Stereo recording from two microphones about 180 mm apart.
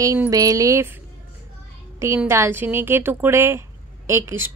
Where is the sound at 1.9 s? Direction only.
15° right (ahead or behind).